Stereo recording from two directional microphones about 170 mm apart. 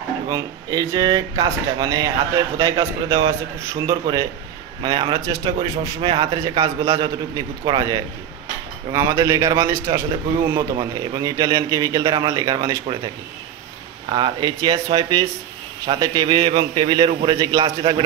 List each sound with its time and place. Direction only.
0.3 s speech: 25° right (ahead or behind)